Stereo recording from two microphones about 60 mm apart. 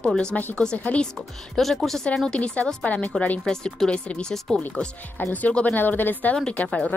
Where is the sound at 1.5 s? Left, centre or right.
Centre.